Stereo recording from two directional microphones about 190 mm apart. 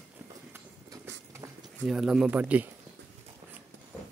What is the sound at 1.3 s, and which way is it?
Speech, 5° right (ahead or behind).